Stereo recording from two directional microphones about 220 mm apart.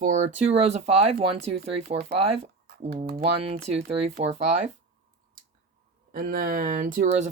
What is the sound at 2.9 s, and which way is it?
Speech, 45° right (ahead or behind).